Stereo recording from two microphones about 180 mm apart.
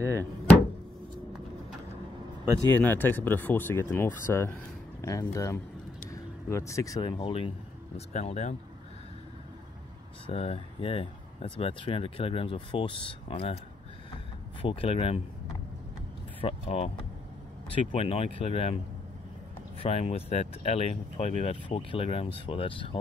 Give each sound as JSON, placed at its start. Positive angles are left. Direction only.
{"t": 2.7, "sound": "speech", "side_deg": 10}
{"t": 10.2, "sound": "speech", "side_deg": 35}
{"t": 14.6, "sound": "speech", "side_deg": 30}
{"t": 16.3, "sound": "speech", "side_deg": 35}
{"t": 19.8, "sound": "speech", "side_deg": 35}